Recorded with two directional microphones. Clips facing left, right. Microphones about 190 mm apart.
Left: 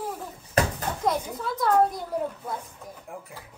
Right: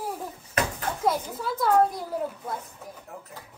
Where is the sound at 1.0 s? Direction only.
5° right (ahead or behind).